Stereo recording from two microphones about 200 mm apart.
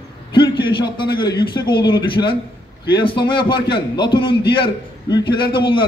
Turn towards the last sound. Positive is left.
turn(degrees=25)  # may be behind; listen again after turning